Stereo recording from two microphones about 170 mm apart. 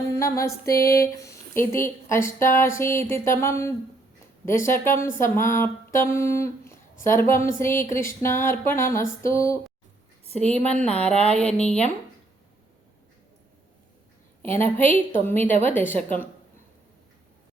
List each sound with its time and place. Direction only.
0.2 s a sound: 20° left (ahead or behind)
0.6 s speech: 15° left (ahead or behind)
10.2 s a woman's voice: 35° right (ahead or behind)
10.7 s speech: 5° left (ahead or behind)
11.1 s a sound: 40° right (ahead or behind)
11.3 s speech: 5° left (ahead or behind)
14.8 s speech: 10° left (ahead or behind)